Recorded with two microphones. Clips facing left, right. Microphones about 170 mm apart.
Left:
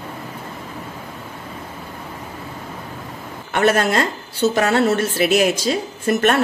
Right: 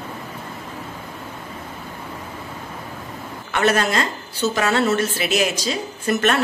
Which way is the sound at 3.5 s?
50° left (ahead or behind).